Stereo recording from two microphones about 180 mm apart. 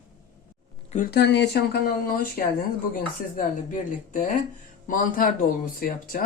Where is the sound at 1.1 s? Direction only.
70° left (ahead or behind).